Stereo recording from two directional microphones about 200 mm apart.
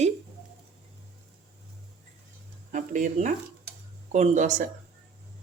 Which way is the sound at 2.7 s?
40° right (ahead or behind).